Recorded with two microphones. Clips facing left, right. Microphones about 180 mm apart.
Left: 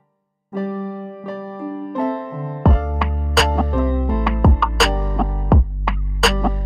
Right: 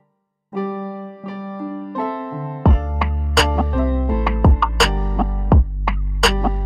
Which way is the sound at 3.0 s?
Centre (ahead or behind).